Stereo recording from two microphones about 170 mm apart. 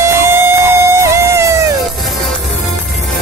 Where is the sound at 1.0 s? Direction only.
15° right (ahead or behind).